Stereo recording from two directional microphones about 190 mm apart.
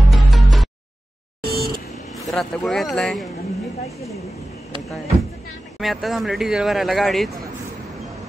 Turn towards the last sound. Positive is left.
turn(degrees=0)  # may be behind; listen again after turning